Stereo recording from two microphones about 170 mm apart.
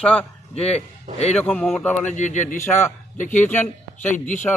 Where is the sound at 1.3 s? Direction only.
10° left (ahead or behind).